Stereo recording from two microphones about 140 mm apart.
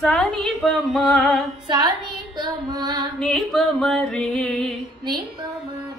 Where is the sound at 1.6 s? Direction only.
30° right (ahead or behind).